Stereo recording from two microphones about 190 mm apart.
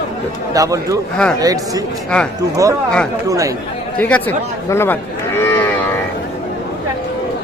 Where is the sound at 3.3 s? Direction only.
15° right (ahead or behind).